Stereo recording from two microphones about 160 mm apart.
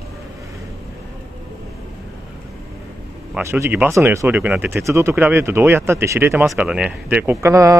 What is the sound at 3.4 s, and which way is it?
Speech, 15° right (ahead or behind).